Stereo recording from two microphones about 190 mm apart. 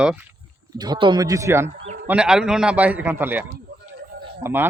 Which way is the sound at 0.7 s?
20° right (ahead or behind).